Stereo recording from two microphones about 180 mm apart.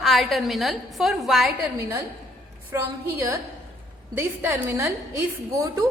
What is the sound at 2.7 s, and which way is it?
Speech, 15° right (ahead or behind).